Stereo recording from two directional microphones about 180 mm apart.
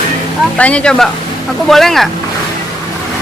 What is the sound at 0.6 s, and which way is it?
Speech, 5° left (ahead or behind).